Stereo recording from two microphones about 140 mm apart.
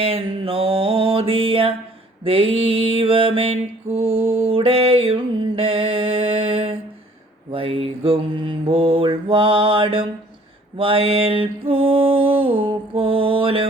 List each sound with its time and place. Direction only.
0.0 s mantra: 40° right (ahead or behind)